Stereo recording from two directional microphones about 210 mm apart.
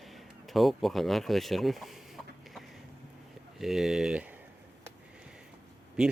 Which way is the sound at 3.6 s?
Centre (ahead or behind).